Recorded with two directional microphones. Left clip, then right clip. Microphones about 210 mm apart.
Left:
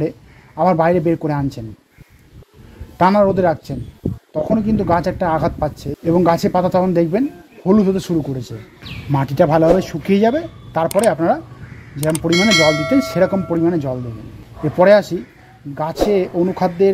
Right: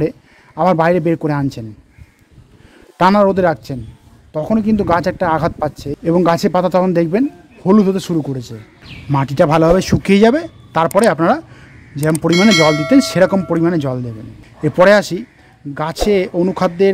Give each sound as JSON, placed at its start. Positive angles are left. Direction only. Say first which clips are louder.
{"t": 0.6, "sound": "speech", "louder": "right 1 dB", "side_deg": -30}
{"t": 3.0, "sound": "speech", "louder": "right 2 dB", "side_deg": -30}
{"t": 12.3, "sound": "speech", "louder": "right 2 dB", "side_deg": 0}
{"t": 12.9, "sound": "speech", "louder": "right 4 dB", "side_deg": -30}